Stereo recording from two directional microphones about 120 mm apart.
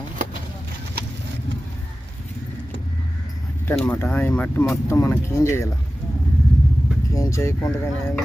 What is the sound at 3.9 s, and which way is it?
Speech, 15° left (ahead or behind).